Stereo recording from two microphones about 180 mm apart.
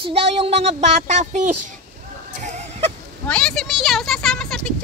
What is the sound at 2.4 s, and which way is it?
Fowl, 40° right (ahead or behind).